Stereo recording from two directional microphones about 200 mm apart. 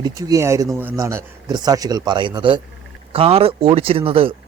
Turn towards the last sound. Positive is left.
turn(degrees=-30)  # may be behind; listen again after turning